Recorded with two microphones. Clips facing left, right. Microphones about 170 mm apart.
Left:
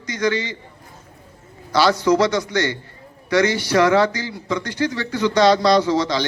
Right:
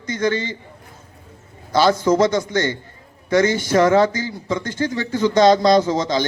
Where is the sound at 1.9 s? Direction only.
50° right (ahead or behind).